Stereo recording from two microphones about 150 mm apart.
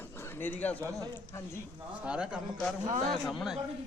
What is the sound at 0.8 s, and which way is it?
Speech, 25° right (ahead or behind).